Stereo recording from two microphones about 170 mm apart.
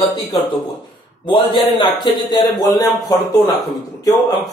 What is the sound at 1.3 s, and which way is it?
A man's voice, 30° left (ahead or behind).